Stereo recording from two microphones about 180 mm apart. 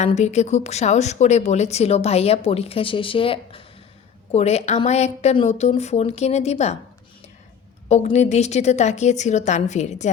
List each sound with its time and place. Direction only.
0.0 s a woman's voice: 40° left (ahead or behind)
7.9 s a woman's voice: 40° left (ahead or behind)